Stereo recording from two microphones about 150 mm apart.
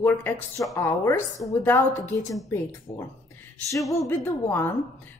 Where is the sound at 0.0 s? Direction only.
15° left (ahead or behind).